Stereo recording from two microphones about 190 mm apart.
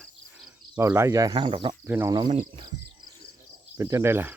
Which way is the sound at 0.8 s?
15° right (ahead or behind).